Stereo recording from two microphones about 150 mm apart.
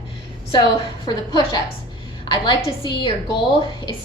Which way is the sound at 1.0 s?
30° left (ahead or behind).